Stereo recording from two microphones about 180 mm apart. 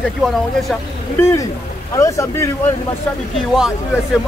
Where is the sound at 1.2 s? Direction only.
15° left (ahead or behind).